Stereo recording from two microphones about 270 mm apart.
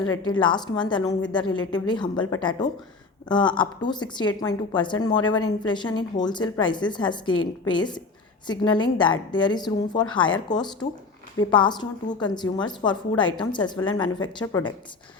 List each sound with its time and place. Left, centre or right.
0.3 s a woman's voice: centre